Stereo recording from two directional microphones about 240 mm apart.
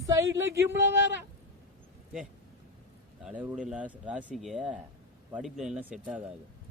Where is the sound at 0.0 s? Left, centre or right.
Centre.